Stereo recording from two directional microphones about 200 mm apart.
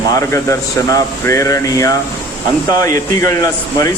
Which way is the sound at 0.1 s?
15° left (ahead or behind).